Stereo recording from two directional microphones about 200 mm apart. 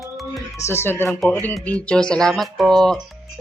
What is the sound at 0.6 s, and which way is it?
Music, 10° left (ahead or behind).